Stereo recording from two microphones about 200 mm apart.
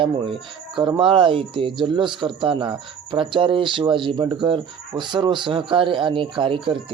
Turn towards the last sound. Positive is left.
turn(degrees=-25)  # may be behind; listen again after turning